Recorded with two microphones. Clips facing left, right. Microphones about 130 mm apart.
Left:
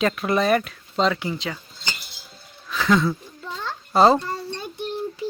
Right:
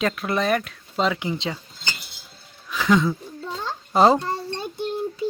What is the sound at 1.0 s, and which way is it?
Speech, 15° right (ahead or behind).